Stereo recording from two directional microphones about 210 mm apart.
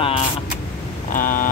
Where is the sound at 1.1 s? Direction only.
40° left (ahead or behind).